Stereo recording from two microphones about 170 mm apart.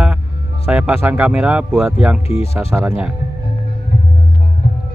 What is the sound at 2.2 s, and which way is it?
Speech, 35° left (ahead or behind).